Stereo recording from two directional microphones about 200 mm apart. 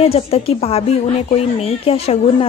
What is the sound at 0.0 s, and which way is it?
Speech, 30° left (ahead or behind).